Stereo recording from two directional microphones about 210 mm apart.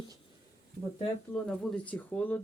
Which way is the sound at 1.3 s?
Centre (ahead or behind).